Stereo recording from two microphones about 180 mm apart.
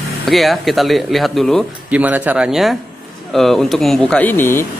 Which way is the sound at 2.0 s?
10° right (ahead or behind).